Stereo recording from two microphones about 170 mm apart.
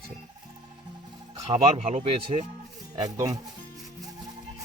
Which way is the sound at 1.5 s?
40° right (ahead or behind).